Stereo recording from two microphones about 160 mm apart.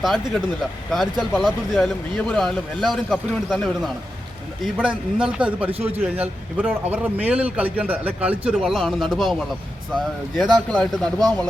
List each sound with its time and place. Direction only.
0.9 s a man's voice: centre (ahead or behind)
5.7 s a man's voice: 40° right (ahead or behind)
6.0 s a man's voice: 10° right (ahead or behind)